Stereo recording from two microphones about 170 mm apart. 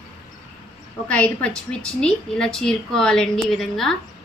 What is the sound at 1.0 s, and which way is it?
A woman's voice, 5° left (ahead or behind).